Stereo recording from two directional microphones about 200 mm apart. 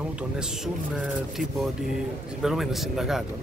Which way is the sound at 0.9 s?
Centre (ahead or behind).